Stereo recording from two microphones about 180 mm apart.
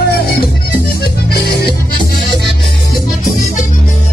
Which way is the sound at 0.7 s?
60° left (ahead or behind).